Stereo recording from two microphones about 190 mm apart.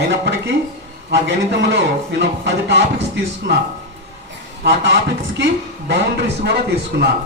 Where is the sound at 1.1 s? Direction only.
65° right (ahead or behind).